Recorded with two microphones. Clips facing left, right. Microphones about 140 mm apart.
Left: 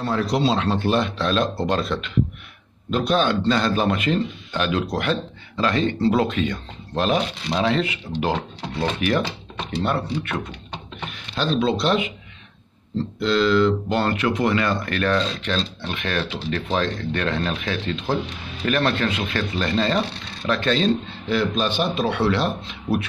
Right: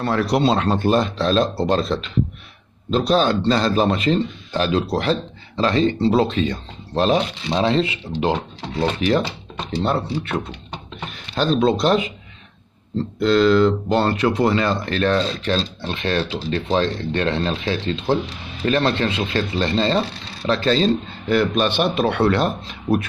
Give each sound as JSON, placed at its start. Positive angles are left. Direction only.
{"t": 0.0, "sound": "speech", "side_deg": -65}
{"t": 9.0, "sound": "speech", "side_deg": -30}
{"t": 11.1, "sound": "speech", "side_deg": -45}
{"t": 13.2, "sound": "speech", "side_deg": -45}
{"t": 21.3, "sound": "a man's voice", "side_deg": -60}